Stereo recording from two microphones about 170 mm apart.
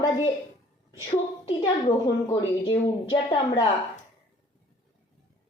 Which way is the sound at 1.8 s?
25° left (ahead or behind).